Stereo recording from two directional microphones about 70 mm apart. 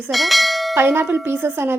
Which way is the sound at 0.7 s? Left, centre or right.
Right.